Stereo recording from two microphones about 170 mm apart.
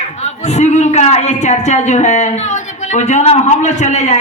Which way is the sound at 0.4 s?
45° left (ahead or behind).